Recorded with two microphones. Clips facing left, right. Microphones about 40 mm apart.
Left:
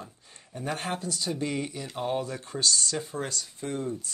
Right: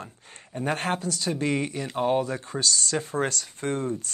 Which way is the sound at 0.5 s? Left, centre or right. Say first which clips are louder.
Right 5 dB; right.